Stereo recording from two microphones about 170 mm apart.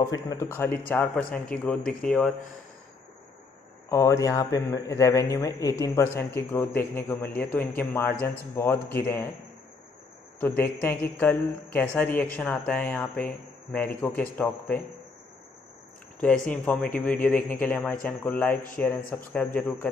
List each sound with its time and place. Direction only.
0.3 s a man's voice: 15° left (ahead or behind)
3.9 s a man's voice: 20° left (ahead or behind)
10.6 s a man's voice: 10° left (ahead or behind)
16.4 s a man's voice: 10° left (ahead or behind)
17.4 s speech: 55° left (ahead or behind)
17.6 s a man's voice: 10° left (ahead or behind)